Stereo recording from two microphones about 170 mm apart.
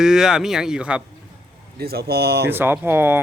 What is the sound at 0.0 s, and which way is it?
Speech, 5° right (ahead or behind).